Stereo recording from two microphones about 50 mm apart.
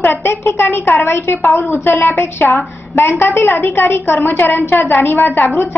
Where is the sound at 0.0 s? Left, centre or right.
Left.